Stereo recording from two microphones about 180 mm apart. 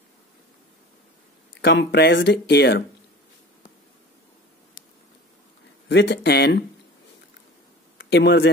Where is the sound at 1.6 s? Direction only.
70° left (ahead or behind).